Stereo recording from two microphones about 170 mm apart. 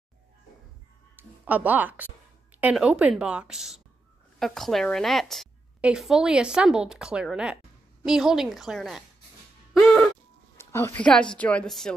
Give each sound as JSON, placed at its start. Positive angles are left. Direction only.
{"t": 1.1, "sound": "a woman's voice", "side_deg": -10}
{"t": 9.8, "sound": "music", "side_deg": 5}
{"t": 10.6, "sound": "a sound", "side_deg": 15}
{"t": 11.0, "sound": "a woman's voice", "side_deg": 5}